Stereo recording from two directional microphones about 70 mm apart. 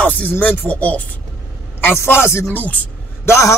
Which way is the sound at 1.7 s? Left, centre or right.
Left.